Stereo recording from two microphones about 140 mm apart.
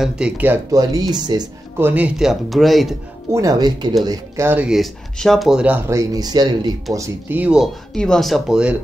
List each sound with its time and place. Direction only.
0.0 s speech: 5° right (ahead or behind)
0.7 s speech: 25° right (ahead or behind)
1.8 s speech: 15° right (ahead or behind)
3.3 s speech: 25° right (ahead or behind)
4.5 s speech: 5° right (ahead or behind)
5.9 s speech: 25° right (ahead or behind)
7.2 s speech: 10° right (ahead or behind)